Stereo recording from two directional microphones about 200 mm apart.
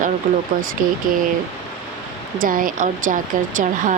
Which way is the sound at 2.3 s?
45° right (ahead or behind).